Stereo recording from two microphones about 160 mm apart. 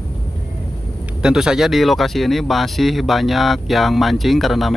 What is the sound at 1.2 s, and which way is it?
Speech, 5° right (ahead or behind).